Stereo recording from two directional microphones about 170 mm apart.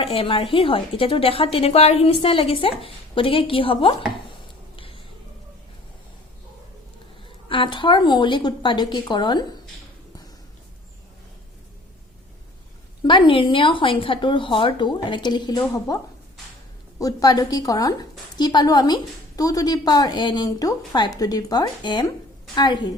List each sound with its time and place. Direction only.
0.0 s a woman's voice: 35° left (ahead or behind)
7.4 s a woman's voice: 30° left (ahead or behind)
13.0 s a woman's voice: 30° left (ahead or behind)
17.0 s a woman's voice: 20° left (ahead or behind)